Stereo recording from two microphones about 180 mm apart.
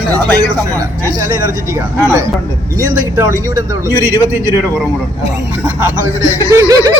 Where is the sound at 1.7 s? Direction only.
20° right (ahead or behind).